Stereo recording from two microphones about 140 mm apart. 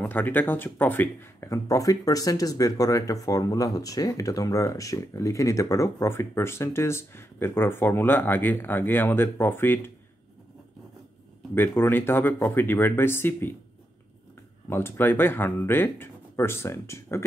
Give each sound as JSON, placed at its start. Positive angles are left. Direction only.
{"t": 0.0, "sound": "speech", "side_deg": 15}
{"t": 11.5, "sound": "speech", "side_deg": 15}
{"t": 14.7, "sound": "speech", "side_deg": 15}